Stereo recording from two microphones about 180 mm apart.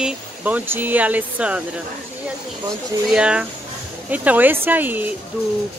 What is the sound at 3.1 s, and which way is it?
Speech, 5° right (ahead or behind).